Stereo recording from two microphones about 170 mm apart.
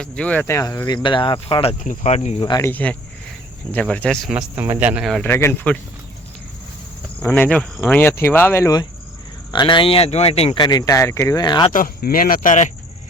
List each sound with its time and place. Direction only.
0.0 s speech: 5° left (ahead or behind); by 1.7 s 30° left (ahead or behind)
1.8 s cricket: 45° left (ahead or behind)
2.4 s speech: 25° left (ahead or behind)
2.6 s speech: 10° left (ahead or behind)
5.2 s speech: 15° left (ahead or behind)
7.2 s speech: 10° left (ahead or behind); by 11.7 s 25° left (ahead or behind)
11.7 s speech: 55° left (ahead or behind)